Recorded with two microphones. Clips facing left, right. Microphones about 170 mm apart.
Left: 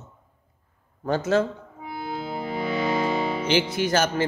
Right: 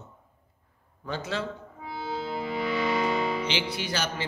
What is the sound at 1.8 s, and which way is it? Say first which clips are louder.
Music: left 2 dB; 15° left (ahead or behind).